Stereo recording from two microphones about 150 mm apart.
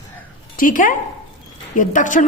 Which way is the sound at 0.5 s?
65° left (ahead or behind).